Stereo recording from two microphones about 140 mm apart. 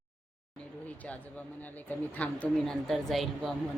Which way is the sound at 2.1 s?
10° left (ahead or behind).